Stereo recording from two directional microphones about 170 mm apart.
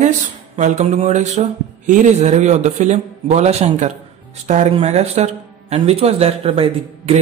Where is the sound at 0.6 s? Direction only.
45° right (ahead or behind).